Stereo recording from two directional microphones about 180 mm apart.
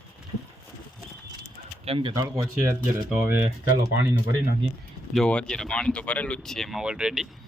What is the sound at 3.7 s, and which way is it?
Speech, 20° right (ahead or behind).